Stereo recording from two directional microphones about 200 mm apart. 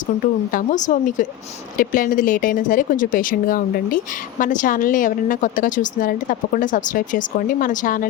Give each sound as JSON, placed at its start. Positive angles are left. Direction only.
{"t": 0.5, "sound": "speech", "side_deg": 40}